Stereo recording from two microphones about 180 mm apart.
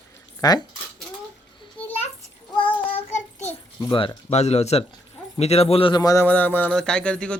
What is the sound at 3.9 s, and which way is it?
A man's voice, 30° left (ahead or behind).